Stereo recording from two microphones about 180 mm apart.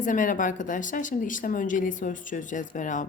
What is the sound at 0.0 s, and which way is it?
Speech, 45° left (ahead or behind).